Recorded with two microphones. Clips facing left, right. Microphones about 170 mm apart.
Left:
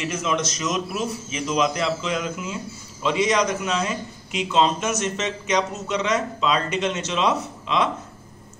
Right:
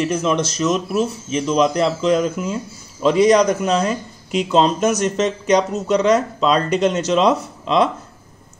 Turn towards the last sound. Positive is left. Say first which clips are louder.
# right 6 dB
turn(degrees=-35)  # may be behind; listen again after turning